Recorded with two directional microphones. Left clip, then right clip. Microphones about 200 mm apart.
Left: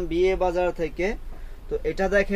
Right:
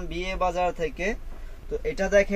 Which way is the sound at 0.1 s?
35° left (ahead or behind).